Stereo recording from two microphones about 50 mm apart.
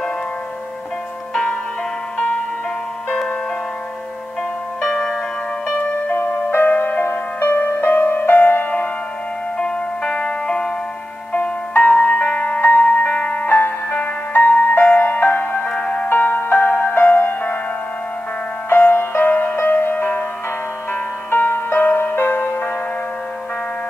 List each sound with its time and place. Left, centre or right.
1.3 s music: centre
2.1 s music: left
4.9 s music: centre
5.8 s music: left
6.5 s music: left
9.6 s music: centre
11.7 s music: left
13.2 s music: left
13.5 s music: left
16.1 s music: left
18.7 s music: left